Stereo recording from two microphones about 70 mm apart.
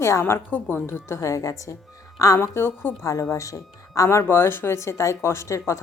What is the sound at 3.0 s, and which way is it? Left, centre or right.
Speech, left.